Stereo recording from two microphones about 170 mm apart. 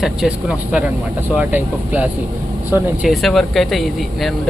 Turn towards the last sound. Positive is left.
turn(degrees=0)  # may be behind; listen again after turning